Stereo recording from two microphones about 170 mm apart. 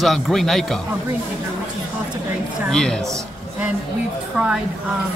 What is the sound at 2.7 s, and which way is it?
Speech, 5° left (ahead or behind).